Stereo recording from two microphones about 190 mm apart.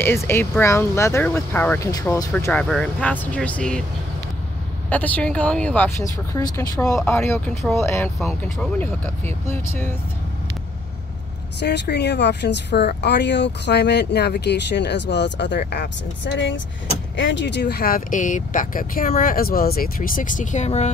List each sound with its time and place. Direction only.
0.0 s speech: 10° left (ahead or behind)
2.3 s speech: 10° left (ahead or behind)
4.8 s speech: 10° left (ahead or behind)
11.6 s speech: 60° left (ahead or behind)
17.2 s speech: 70° left (ahead or behind); by 20.9 s 35° left (ahead or behind)